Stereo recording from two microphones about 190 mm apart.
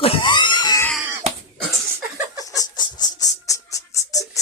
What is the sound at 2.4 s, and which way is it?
Music, 20° left (ahead or behind).